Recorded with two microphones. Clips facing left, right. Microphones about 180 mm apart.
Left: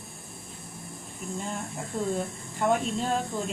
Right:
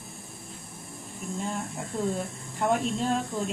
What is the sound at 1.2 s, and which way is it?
Speech, centre (ahead or behind).